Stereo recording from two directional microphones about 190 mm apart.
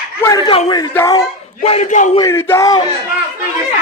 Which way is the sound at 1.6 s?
35° left (ahead or behind).